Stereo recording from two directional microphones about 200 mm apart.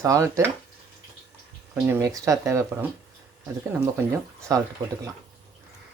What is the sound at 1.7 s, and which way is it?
Speech, 10° right (ahead or behind).